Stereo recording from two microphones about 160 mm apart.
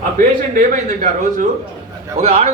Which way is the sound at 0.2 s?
55° right (ahead or behind).